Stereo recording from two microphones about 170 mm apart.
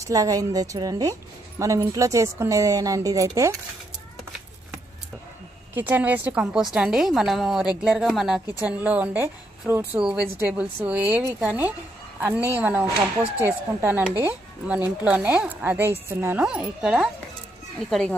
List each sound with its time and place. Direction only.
0.0 s speech: 20° right (ahead or behind)
5.8 s a woman's voice: 10° right (ahead or behind)